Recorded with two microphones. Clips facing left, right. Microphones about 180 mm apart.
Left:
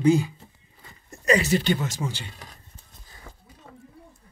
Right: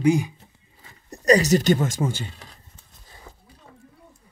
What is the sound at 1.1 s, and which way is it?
Speech, 35° right (ahead or behind).